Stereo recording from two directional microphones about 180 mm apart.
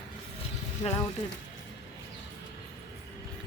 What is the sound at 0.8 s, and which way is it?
Speech, 35° left (ahead or behind).